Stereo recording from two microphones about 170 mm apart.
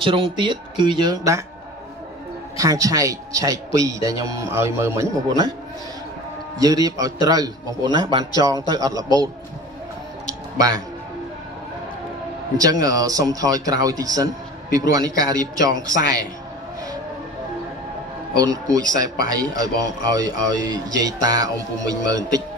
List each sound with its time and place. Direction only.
0.0 s speech: 30° right (ahead or behind)
2.5 s speech: 20° right (ahead or behind)
6.6 s speech: 20° right (ahead or behind)
10.2 s music: 20° right (ahead or behind)
12.5 s speech: 20° right (ahead or behind)
18.3 s speech: 20° right (ahead or behind)